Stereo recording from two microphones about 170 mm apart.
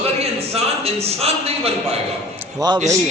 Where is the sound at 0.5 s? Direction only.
35° right (ahead or behind).